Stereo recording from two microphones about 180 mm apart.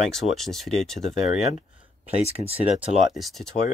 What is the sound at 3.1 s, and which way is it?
Speech, centre (ahead or behind).